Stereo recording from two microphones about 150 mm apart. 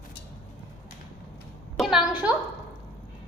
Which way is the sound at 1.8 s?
5° right (ahead or behind).